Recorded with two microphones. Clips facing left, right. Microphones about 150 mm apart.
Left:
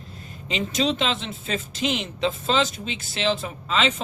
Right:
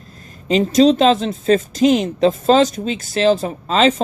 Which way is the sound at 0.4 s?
40° right (ahead or behind).